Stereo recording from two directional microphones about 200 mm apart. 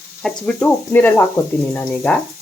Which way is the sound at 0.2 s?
5° left (ahead or behind).